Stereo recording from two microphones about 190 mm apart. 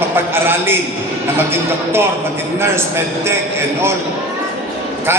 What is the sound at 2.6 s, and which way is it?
Music, 15° right (ahead or behind).